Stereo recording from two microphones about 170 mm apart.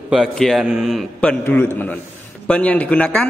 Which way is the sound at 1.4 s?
10° left (ahead or behind).